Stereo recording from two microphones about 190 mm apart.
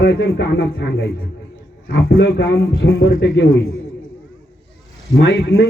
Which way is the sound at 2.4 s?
70° left (ahead or behind).